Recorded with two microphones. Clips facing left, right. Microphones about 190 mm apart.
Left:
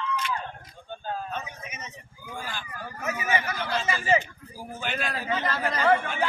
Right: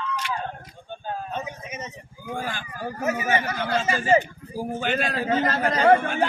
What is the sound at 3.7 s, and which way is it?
A man's voice, 45° right (ahead or behind).